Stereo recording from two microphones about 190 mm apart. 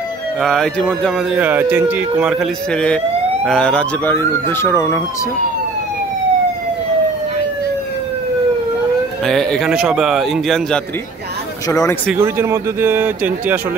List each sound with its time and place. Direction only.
0.4 s speech: centre (ahead or behind)
9.2 s speech: centre (ahead or behind)
11.7 s speech: 15° left (ahead or behind)
12.1 s speech: 10° right (ahead or behind)